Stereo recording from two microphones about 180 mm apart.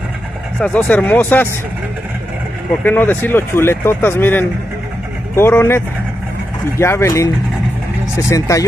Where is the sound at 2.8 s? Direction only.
10° left (ahead or behind).